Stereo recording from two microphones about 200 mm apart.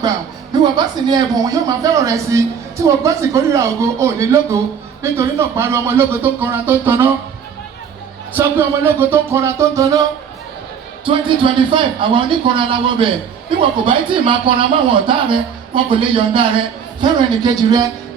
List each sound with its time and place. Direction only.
0.5 s speech: 20° right (ahead or behind)
8.3 s speech: 10° right (ahead or behind)